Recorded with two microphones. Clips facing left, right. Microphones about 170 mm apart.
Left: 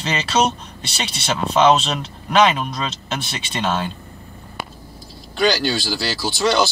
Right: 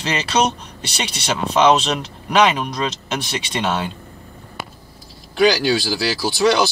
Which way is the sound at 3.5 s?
15° right (ahead or behind).